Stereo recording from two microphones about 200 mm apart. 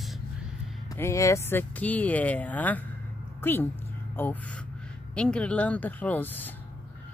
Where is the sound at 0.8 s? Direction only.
15° left (ahead or behind).